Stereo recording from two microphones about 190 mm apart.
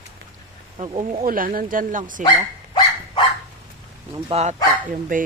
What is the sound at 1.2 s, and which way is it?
Speech, 50° right (ahead or behind).